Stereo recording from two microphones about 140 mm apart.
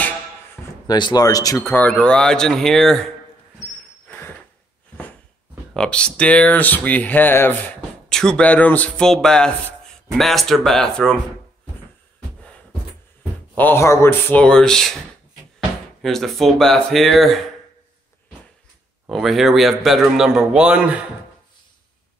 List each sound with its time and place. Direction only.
0.8 s speech: 30° left (ahead or behind)
1.7 s speech: 10° left (ahead or behind)
5.8 s speech: 5° left (ahead or behind)
13.6 s speech: 15° left (ahead or behind)
14.4 s speech: 5° left (ahead or behind)
16.0 s speech: centre (ahead or behind)
19.0 s speech: centre (ahead or behind)